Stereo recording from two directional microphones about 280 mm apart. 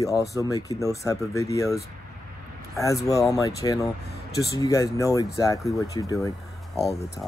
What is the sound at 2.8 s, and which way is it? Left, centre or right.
Speech, centre.